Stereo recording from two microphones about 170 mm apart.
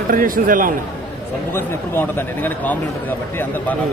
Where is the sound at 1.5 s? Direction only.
15° left (ahead or behind).